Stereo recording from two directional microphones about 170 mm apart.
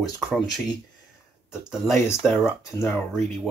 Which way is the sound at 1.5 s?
5° right (ahead or behind).